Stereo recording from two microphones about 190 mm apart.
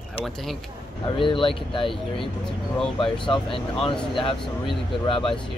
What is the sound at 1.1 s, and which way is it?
Speech, 25° left (ahead or behind).